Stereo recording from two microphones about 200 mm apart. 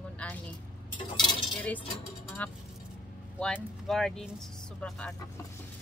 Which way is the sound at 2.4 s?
5° left (ahead or behind).